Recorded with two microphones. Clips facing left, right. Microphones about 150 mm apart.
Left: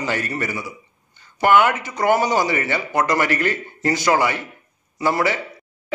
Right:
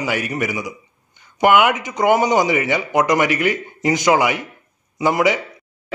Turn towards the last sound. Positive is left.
turn(degrees=-15)  # may be behind; listen again after turning